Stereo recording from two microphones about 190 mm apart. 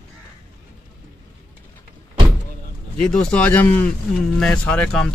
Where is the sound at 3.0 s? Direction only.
5° left (ahead or behind).